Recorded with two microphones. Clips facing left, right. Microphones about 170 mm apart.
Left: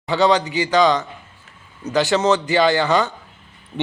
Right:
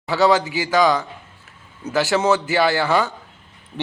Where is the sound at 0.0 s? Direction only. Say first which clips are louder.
Even; 5° right (ahead or behind).